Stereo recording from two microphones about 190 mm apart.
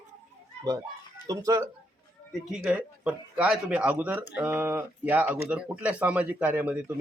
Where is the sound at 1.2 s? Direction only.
15° right (ahead or behind).